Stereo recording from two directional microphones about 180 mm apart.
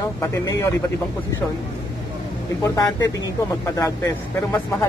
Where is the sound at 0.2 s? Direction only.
15° left (ahead or behind).